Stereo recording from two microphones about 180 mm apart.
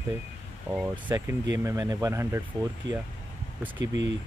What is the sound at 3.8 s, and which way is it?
Speech, 90° right.